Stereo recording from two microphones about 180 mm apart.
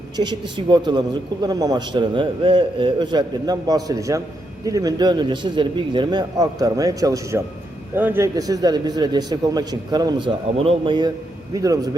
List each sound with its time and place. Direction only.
0.2 s a man's voice: 25° right (ahead or behind)